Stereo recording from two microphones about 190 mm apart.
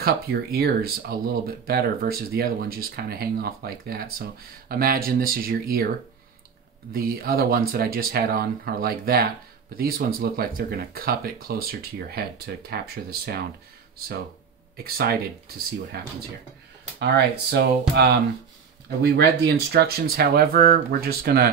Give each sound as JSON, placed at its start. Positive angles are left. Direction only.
{"t": 0.0, "sound": "speech", "side_deg": -55}
{"t": 6.9, "sound": "speech", "side_deg": -50}
{"t": 14.8, "sound": "speech", "side_deg": -55}
{"t": 17.0, "sound": "speech", "side_deg": -60}